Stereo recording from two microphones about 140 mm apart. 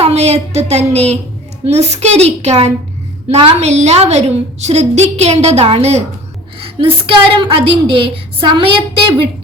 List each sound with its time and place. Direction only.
0.0 s a woman's voice: 50° right (ahead or behind)